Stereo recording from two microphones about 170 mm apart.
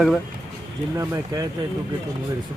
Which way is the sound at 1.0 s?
20° right (ahead or behind).